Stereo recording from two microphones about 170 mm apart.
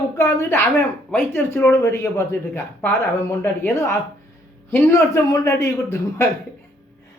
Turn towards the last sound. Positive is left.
turn(degrees=15)  # may be behind; listen again after turning